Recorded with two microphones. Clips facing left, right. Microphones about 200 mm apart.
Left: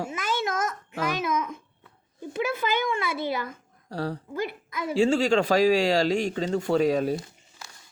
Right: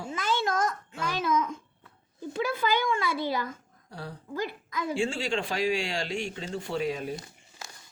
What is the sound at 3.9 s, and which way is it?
Speech, 75° left (ahead or behind).